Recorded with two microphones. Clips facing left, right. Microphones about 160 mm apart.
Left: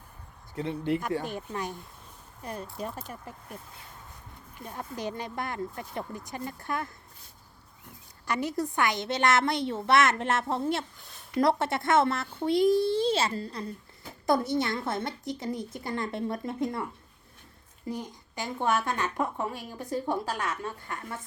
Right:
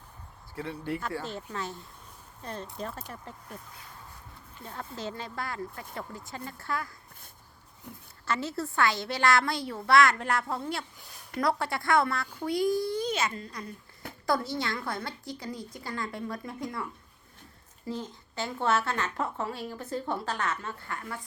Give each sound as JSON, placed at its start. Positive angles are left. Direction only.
{"t": 0.5, "sound": "speech", "side_deg": 20}
{"t": 4.6, "sound": "a child's voice", "side_deg": 15}
{"t": 8.3, "sound": "a child's voice", "side_deg": 15}
{"t": 17.8, "sound": "speech", "side_deg": 15}